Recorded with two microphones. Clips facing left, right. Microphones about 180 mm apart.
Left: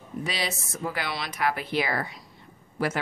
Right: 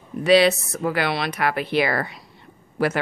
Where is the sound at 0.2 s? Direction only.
70° right (ahead or behind).